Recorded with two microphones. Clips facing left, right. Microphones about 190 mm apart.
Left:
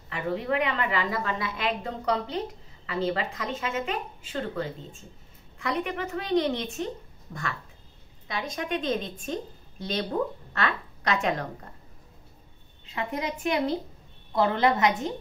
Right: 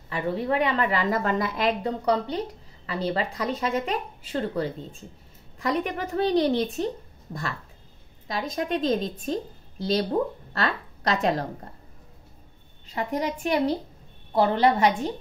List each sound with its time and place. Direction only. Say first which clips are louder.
0.1 s a woman's voice: right 2 dB; 35° right (ahead or behind)
8.3 s a woman's voice: right 3 dB; 35° right (ahead or behind)
12.8 s a woman's voice: right 4 dB; 35° right (ahead or behind)